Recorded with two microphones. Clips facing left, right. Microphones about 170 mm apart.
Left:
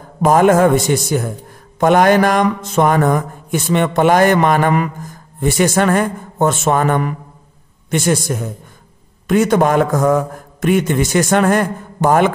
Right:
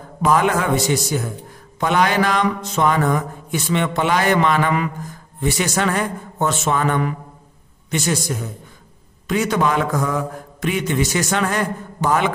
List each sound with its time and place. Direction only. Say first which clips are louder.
0.2 s mantra: left 7 dB; 45° left (ahead or behind)